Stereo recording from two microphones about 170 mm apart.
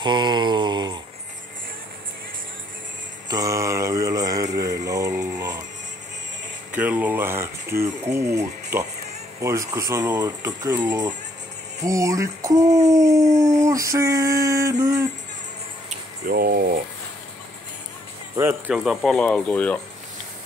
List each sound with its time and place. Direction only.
0.0 s a sound: 25° right (ahead or behind)
3.3 s mantra: 20° right (ahead or behind)
6.7 s speech: 10° right (ahead or behind)
13.4 s a sound: 20° right (ahead or behind)
16.3 s speech: 60° right (ahead or behind)
18.3 s speech: 15° right (ahead or behind); by 19.8 s 10° left (ahead or behind)